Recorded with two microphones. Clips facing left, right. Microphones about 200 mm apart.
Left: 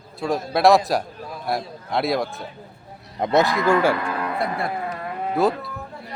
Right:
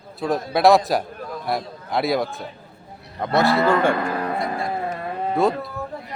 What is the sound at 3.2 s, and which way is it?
Speech, 20° left (ahead or behind).